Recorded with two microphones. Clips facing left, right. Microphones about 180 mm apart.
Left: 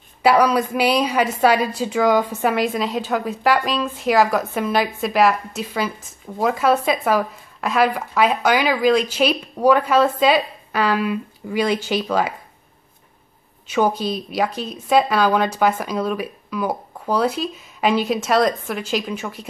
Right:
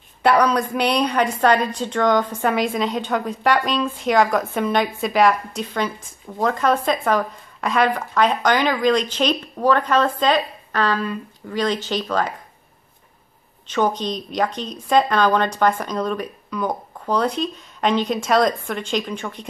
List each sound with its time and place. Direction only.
0.2 s a woman's voice: 5° left (ahead or behind)
13.7 s a woman's voice: 10° left (ahead or behind)